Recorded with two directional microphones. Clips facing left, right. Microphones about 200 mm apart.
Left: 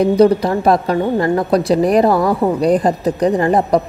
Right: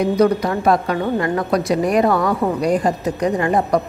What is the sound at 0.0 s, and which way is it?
A woman's voice, 30° left (ahead or behind).